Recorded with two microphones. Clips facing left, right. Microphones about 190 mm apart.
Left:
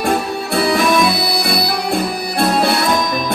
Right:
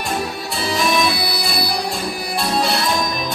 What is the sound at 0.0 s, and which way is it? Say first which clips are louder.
Music: left 6 dB; 60° left (ahead or behind).